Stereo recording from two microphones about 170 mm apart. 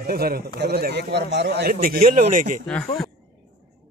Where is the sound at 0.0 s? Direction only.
65° right (ahead or behind).